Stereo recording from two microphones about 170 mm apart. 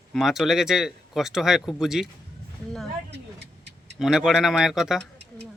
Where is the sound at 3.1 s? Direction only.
90° right.